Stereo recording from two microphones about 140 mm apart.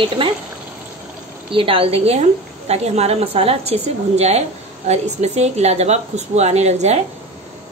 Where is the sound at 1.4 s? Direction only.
40° right (ahead or behind).